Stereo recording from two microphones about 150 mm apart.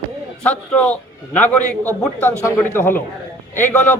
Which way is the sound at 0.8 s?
10° left (ahead or behind).